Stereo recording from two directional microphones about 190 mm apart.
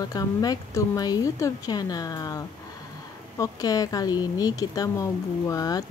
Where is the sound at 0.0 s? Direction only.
20° left (ahead or behind).